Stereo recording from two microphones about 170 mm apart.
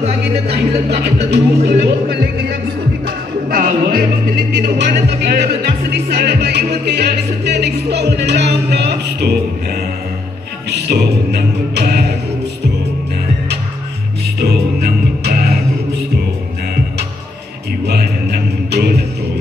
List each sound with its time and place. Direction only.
0.8 s music: 75° right (ahead or behind)
4.6 s music: 80° right
10.7 s music: 75° right (ahead or behind)
14.4 s music: 70° right (ahead or behind)
17.8 s music: 75° right (ahead or behind)